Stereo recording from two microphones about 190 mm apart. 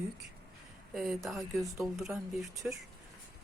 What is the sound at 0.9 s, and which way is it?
Speech, centre (ahead or behind).